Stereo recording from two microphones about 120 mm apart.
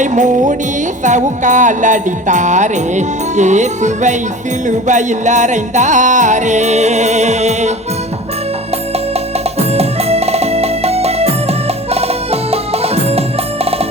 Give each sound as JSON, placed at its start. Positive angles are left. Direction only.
{"t": 0.0, "sound": "music", "side_deg": -90}
{"t": 9.6, "sound": "music", "side_deg": -60}